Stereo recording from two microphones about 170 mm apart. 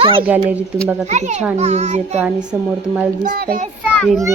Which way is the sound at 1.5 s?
40° right (ahead or behind).